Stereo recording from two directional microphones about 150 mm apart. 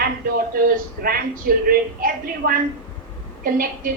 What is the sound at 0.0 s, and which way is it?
Speech, 80° right.